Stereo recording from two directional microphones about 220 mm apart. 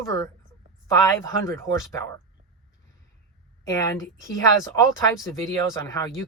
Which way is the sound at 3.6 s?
15° left (ahead or behind).